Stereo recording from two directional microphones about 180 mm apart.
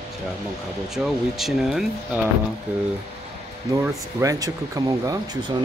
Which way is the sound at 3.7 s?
15° right (ahead or behind).